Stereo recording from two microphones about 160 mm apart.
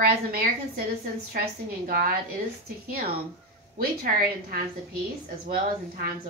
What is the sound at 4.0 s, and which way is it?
Speech, 65° right (ahead or behind).